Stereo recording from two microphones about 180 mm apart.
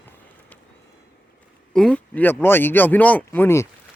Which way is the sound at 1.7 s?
5° left (ahead or behind).